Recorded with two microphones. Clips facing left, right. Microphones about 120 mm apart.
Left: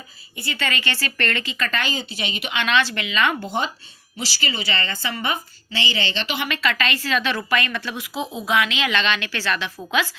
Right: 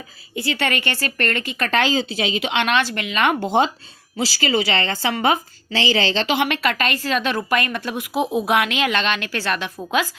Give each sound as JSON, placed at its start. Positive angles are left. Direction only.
{"t": 0.3, "sound": "a woman's voice", "side_deg": -85}
{"t": 2.6, "sound": "speech", "side_deg": -50}
{"t": 3.4, "sound": "a woman's voice", "side_deg": -90}
{"t": 6.6, "sound": "speech", "side_deg": -45}